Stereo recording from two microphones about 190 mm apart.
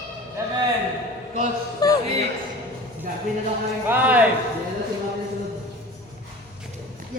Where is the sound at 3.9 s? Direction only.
10° right (ahead or behind).